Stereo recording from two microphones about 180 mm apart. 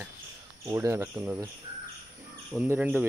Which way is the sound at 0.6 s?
15° right (ahead or behind).